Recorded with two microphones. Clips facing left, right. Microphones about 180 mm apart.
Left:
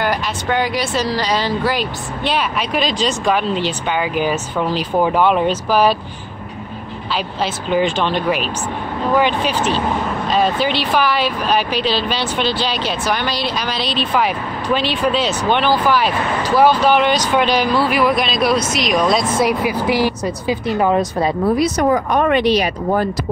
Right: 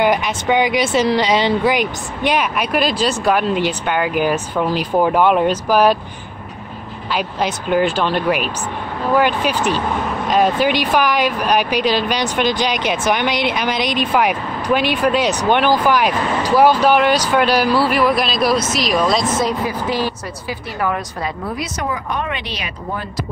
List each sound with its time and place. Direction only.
0.0 s speech: 20° right (ahead or behind)
7.7 s speech: 5° right (ahead or behind)
19.6 s speech: 10° left (ahead or behind); by 23.0 s 40° left (ahead or behind)